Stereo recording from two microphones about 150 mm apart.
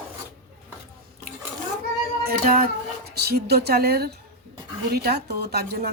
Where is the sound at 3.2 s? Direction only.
90° right.